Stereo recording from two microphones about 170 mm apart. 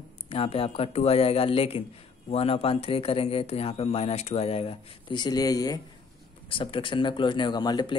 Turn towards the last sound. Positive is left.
turn(degrees=25)  # may be behind; listen again after turning